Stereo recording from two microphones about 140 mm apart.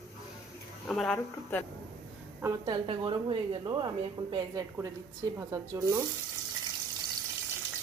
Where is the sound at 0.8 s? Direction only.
5° left (ahead or behind).